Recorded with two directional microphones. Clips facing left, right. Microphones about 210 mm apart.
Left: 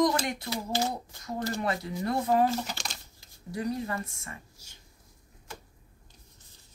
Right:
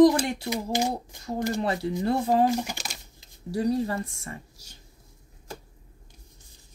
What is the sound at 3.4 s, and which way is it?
Speech, 35° right (ahead or behind).